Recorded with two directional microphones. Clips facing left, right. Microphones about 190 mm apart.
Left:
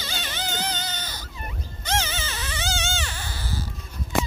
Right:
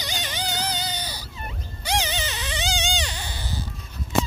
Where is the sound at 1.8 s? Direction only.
15° right (ahead or behind).